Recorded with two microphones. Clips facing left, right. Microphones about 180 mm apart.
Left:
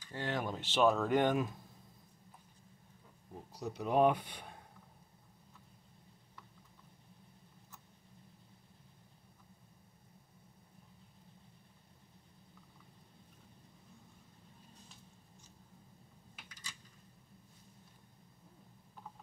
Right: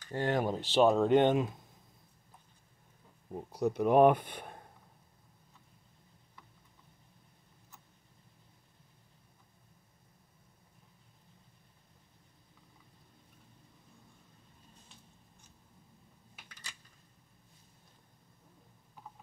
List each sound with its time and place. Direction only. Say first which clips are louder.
0.1 s speech: right 7 dB; 45° right (ahead or behind)
0.5 s speech: right 3 dB; 35° right (ahead or behind)
3.5 s speech: right 7 dB; 55° right (ahead or behind)